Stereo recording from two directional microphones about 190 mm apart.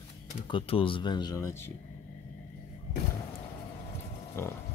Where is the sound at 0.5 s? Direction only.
30° left (ahead or behind).